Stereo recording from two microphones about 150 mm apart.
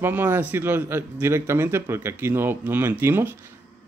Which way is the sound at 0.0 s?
15° right (ahead or behind).